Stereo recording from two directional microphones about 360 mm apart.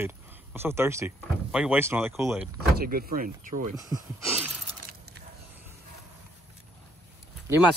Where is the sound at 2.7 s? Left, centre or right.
Right.